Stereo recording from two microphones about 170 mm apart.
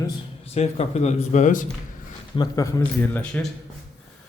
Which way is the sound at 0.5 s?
40° left (ahead or behind).